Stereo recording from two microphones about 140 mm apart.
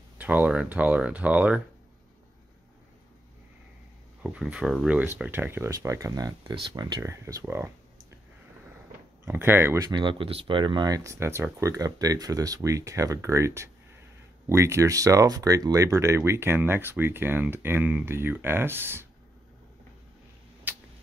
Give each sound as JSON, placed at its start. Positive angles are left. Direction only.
{"t": 0.2, "sound": "speech", "side_deg": -10}
{"t": 4.2, "sound": "speech", "side_deg": -5}
{"t": 9.2, "sound": "speech", "side_deg": -15}
{"t": 9.8, "sound": "speech", "side_deg": -35}
{"t": 20.7, "sound": "a sound", "side_deg": -15}